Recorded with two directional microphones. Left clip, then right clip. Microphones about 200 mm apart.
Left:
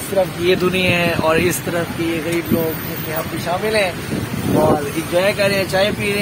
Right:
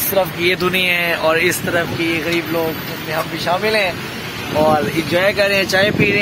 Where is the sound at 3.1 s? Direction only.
Centre (ahead or behind).